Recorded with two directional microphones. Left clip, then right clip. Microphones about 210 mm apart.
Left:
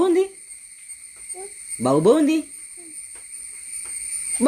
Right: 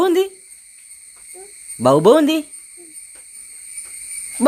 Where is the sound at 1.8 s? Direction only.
25° right (ahead or behind).